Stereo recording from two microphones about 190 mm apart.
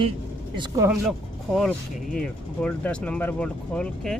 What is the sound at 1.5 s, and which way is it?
Speech, 5° left (ahead or behind).